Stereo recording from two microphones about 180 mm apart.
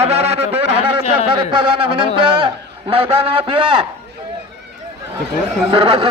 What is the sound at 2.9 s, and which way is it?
Speech, 30° right (ahead or behind).